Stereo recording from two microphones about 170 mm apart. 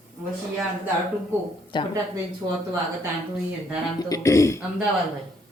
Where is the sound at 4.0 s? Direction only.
20° left (ahead or behind).